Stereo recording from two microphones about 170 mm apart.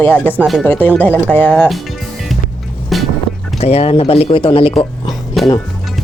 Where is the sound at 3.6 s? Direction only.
35° left (ahead or behind).